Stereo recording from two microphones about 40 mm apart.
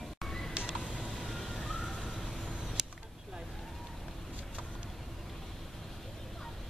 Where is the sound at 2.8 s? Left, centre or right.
Centre.